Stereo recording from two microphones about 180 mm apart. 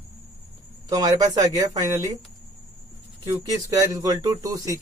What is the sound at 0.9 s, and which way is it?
Speech, 20° right (ahead or behind).